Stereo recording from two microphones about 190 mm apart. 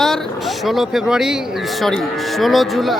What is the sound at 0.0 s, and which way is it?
Vehicle, centre (ahead or behind).